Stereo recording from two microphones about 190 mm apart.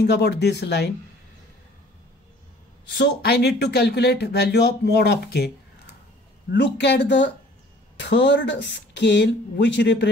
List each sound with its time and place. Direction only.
0.0 s speech: 60° left (ahead or behind)
3.0 s speech: 60° left (ahead or behind)
6.5 s speech: 65° left (ahead or behind)